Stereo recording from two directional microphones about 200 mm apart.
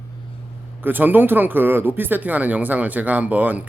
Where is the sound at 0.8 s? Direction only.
10° right (ahead or behind).